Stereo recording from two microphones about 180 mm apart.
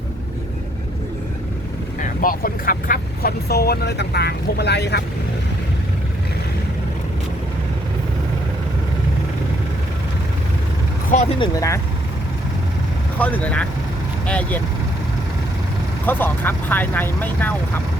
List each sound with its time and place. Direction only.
2.0 s speech: 50° left (ahead or behind); by 5.0 s 65° left (ahead or behind)
11.3 s speech: 20° left (ahead or behind)
13.1 s speech: 10° left (ahead or behind)
16.0 s speech: 10° left (ahead or behind)